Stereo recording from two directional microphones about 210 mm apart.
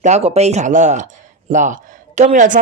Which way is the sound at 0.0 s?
30° right (ahead or behind).